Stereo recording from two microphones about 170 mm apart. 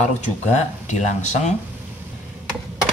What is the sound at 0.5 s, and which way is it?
Speech, 45° left (ahead or behind).